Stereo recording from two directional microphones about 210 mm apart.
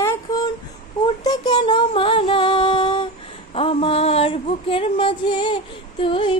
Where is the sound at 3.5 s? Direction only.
25° left (ahead or behind).